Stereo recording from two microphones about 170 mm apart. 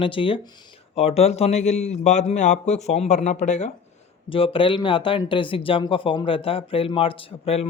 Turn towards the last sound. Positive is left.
turn(degrees=35)  # may be behind; listen again after turning